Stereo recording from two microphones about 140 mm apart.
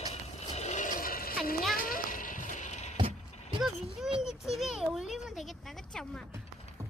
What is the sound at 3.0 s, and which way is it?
Vehicle, 35° right (ahead or behind).